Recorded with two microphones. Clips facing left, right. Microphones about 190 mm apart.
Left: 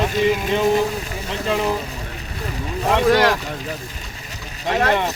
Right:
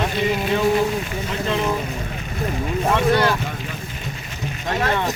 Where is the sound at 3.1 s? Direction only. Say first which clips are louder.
Left 3 dB; 90° left.